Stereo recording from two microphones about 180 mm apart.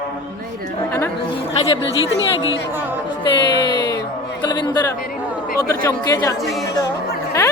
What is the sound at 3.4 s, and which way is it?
Speech, 20° left (ahead or behind).